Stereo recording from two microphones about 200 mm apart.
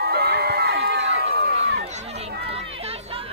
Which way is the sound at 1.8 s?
35° right (ahead or behind).